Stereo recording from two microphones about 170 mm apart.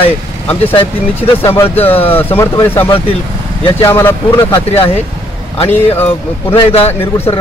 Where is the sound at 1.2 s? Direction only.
15° left (ahead or behind).